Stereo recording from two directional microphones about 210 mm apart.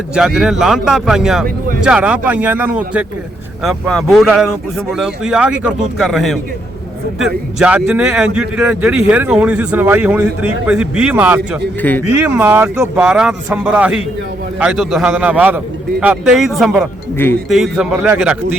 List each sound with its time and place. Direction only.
0.1 s a man's voice: 5° right (ahead or behind)
1.5 s speech: 45° right (ahead or behind)
1.8 s a man's voice: 5° right (ahead or behind)
7.6 s a man's voice: 5° right (ahead or behind)
11.8 s speech: 10° left (ahead or behind)
12.2 s a man's voice: 10° right (ahead or behind)